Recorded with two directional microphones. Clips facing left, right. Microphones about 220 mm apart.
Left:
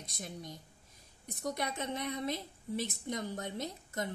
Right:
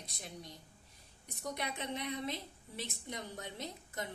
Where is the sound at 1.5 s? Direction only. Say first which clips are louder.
Left 1 dB; 45° left (ahead or behind).